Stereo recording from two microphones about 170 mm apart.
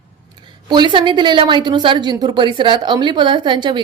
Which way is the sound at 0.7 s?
25° right (ahead or behind).